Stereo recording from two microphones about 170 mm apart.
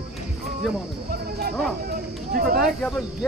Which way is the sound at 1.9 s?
55° right (ahead or behind).